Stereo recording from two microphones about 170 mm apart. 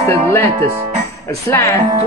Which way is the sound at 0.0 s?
15° left (ahead or behind).